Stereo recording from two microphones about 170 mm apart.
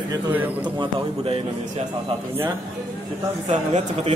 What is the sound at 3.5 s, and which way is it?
Speech, 45° right (ahead or behind).